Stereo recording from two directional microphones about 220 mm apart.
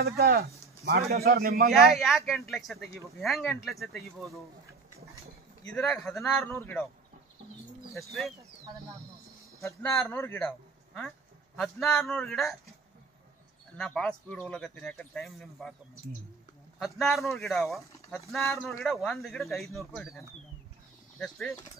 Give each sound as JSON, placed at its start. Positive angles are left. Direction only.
{"t": 0.0, "sound": "speech", "side_deg": -45}
{"t": 1.7, "sound": "speech", "side_deg": 0}
{"t": 5.7, "sound": "a man's voice", "side_deg": 5}
{"t": 7.9, "sound": "speech", "side_deg": 0}
{"t": 9.6, "sound": "a man's voice", "side_deg": 15}
{"t": 11.5, "sound": "speech", "side_deg": 0}
{"t": 13.7, "sound": "speech", "side_deg": 5}
{"t": 16.8, "sound": "speech", "side_deg": 0}